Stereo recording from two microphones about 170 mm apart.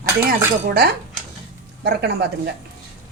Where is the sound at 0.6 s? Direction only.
65° right (ahead or behind).